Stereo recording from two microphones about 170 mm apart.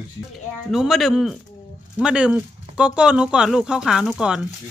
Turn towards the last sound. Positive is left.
turn(degrees=-5)  # may be behind; listen again after turning